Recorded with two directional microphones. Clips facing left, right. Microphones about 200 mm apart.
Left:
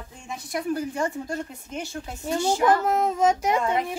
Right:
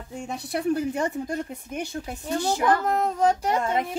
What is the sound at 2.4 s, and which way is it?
Speech, 10° left (ahead or behind).